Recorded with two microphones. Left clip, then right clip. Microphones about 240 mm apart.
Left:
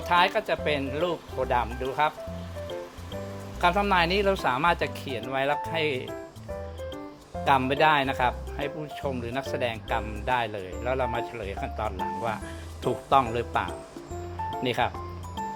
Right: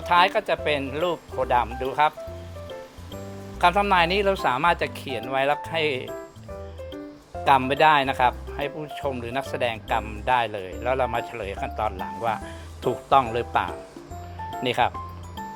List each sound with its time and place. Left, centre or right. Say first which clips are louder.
0.0 s speech: right 3 dB; centre
3.6 s speech: right 4 dB; centre
7.4 s speech: right 4 dB; centre